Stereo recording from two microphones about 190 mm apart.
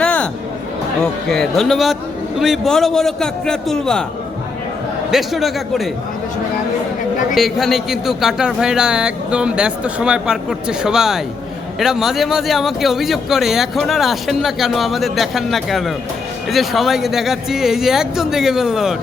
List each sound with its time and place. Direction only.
0.0 s chatter: 5° left (ahead or behind)
1.3 s speech: centre (ahead or behind)
5.1 s speech: centre (ahead or behind)
7.3 s speech: centre (ahead or behind)